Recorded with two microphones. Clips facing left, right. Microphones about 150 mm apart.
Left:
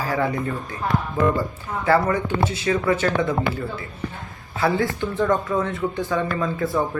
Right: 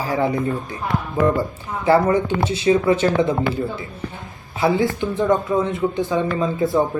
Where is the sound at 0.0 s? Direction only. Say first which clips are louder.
Right 3 dB; 20° right (ahead or behind).